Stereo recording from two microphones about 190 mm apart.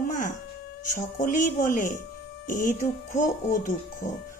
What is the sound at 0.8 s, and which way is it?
Speech, 45° left (ahead or behind).